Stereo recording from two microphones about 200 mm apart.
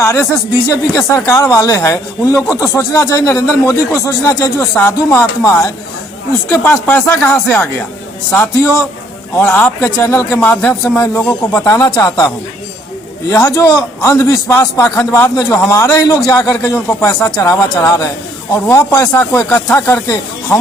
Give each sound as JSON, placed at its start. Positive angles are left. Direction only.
{"t": 0.0, "sound": "speech", "side_deg": 15}
{"t": 13.3, "sound": "speech", "side_deg": 15}